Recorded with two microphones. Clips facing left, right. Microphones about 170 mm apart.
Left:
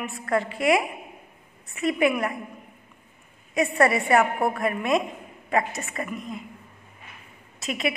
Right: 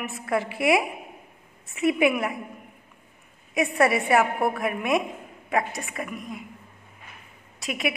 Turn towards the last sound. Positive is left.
turn(degrees=0)  # may be behind; listen again after turning